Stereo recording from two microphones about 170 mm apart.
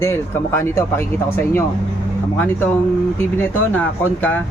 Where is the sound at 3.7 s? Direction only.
10° left (ahead or behind).